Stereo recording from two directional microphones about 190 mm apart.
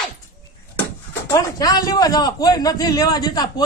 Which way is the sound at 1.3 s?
20° left (ahead or behind).